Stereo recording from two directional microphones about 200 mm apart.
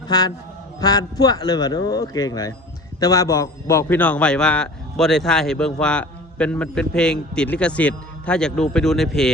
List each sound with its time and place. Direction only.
0.1 s a man's voice: 20° left (ahead or behind); by 9.3 s centre (ahead or behind)